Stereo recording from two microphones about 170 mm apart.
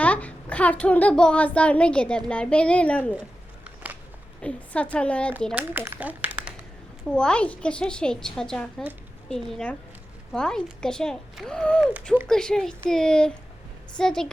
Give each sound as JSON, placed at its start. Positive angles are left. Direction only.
{"t": 0.0, "sound": "a child's voice", "side_deg": 10}
{"t": 4.4, "sound": "a child's voice", "side_deg": 5}
{"t": 5.5, "sound": "speech", "side_deg": -10}
{"t": 7.1, "sound": "a woman's voice", "side_deg": 5}